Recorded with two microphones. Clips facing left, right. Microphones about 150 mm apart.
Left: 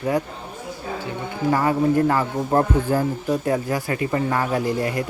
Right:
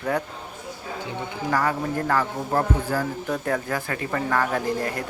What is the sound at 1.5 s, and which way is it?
A man's voice, 20° left (ahead or behind).